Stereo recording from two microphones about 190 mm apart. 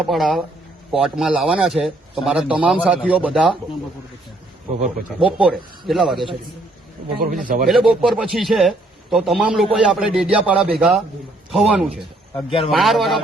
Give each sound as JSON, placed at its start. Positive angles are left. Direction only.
{"t": 0.1, "sound": "a man's voice", "side_deg": 0}
{"t": 5.2, "sound": "a man's voice", "side_deg": 0}
{"t": 7.4, "sound": "speech", "side_deg": -45}
{"t": 7.7, "sound": "a man's voice", "side_deg": 0}
{"t": 12.5, "sound": "speech", "side_deg": 30}
{"t": 12.7, "sound": "a man's voice", "side_deg": 0}